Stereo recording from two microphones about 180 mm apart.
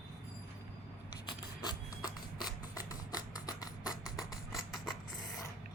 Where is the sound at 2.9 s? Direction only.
20° left (ahead or behind).